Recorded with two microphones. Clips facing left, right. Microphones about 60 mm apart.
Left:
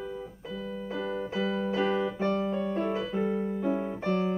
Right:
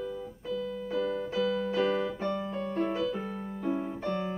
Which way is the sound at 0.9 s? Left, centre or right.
Left.